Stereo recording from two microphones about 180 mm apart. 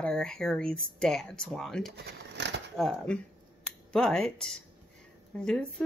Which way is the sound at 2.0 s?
70° right (ahead or behind).